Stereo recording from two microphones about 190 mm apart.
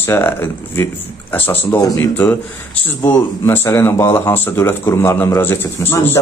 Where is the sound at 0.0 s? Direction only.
10° left (ahead or behind).